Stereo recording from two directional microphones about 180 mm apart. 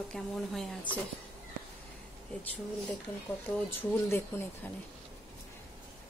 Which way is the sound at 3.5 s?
10° left (ahead or behind).